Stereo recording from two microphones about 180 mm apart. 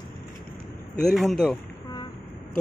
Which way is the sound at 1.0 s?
Centre (ahead or behind).